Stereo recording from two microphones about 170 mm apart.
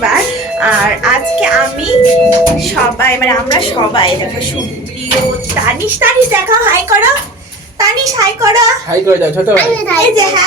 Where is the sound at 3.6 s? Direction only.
30° left (ahead or behind).